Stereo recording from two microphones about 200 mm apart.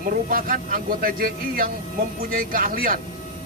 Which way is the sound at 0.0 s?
45° right (ahead or behind).